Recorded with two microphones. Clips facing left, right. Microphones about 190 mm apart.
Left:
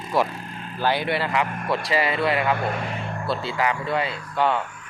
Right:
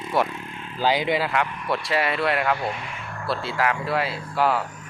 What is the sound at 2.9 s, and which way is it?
Vehicle, 30° left (ahead or behind).